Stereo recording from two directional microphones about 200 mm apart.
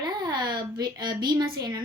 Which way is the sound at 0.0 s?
20° right (ahead or behind).